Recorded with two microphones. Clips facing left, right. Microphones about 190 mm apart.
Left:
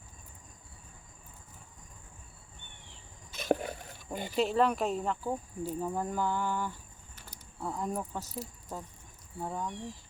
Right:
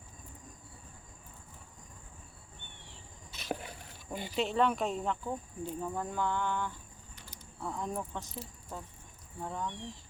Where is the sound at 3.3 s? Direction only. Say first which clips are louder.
Left 9 dB; 50° left (ahead or behind).